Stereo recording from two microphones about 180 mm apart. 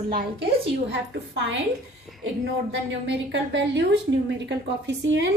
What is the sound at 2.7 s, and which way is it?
A woman's voice, 80° right.